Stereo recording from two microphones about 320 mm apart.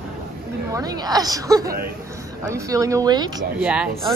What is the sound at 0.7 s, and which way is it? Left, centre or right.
Speech, centre.